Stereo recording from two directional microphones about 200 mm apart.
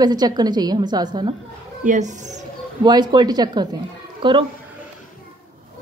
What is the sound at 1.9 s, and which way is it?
Speech, 35° right (ahead or behind).